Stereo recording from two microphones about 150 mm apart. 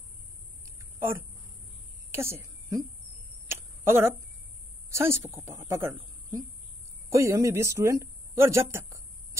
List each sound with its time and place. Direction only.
0.7 s a sound: 15° right (ahead or behind)
4.8 s a woman's voice: 15° right (ahead or behind)
7.1 s speech: 20° right (ahead or behind)